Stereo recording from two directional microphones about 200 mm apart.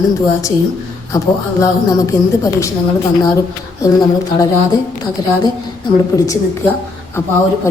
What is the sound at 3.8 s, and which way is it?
Speech, 20° left (ahead or behind).